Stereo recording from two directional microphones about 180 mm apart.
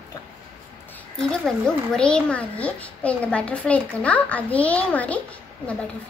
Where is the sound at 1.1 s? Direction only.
5° left (ahead or behind).